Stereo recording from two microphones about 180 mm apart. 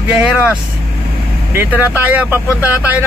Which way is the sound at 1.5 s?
10° right (ahead or behind).